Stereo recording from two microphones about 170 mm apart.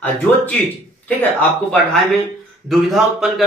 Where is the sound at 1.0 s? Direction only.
10° left (ahead or behind).